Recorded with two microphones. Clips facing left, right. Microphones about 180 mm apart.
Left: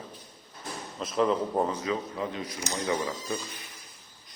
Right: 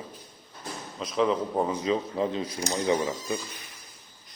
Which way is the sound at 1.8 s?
25° right (ahead or behind).